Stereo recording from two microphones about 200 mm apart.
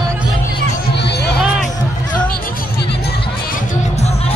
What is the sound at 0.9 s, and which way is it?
Music, 55° left (ahead or behind).